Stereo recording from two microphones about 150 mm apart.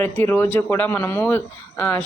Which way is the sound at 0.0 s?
15° left (ahead or behind).